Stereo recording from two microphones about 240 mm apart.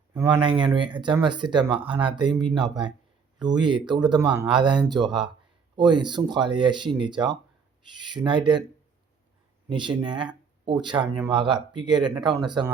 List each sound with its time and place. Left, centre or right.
0.1 s speech: centre
0.4 s speech: right
9.6 s speech: centre